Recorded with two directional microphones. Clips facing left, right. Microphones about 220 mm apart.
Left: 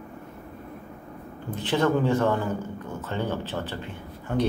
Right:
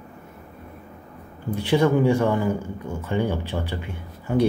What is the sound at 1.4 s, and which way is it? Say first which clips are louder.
Speech: right 4 dB; 10° right (ahead or behind).